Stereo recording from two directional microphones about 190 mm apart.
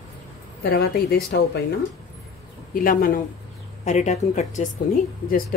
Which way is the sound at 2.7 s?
50° left (ahead or behind).